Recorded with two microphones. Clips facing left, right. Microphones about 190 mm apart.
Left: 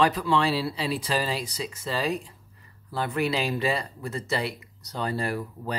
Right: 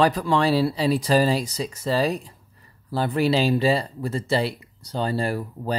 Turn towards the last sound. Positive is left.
turn(degrees=-30)  # may be behind; listen again after turning